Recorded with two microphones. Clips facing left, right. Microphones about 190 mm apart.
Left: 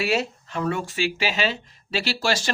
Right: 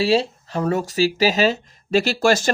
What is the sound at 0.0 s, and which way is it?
Speech, 30° right (ahead or behind).